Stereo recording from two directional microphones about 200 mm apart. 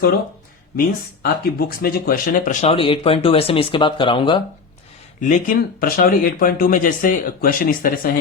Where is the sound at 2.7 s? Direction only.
25° left (ahead or behind).